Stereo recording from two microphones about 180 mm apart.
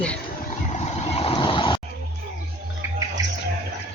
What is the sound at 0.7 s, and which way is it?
Vehicle, 40° left (ahead or behind).